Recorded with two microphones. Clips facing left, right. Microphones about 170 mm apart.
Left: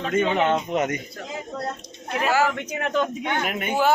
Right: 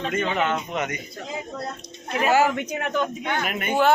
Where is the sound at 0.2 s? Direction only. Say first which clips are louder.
Left 5 dB; 15° left (ahead or behind).